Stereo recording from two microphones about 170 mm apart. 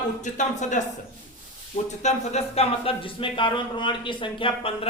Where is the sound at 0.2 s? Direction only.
45° left (ahead or behind).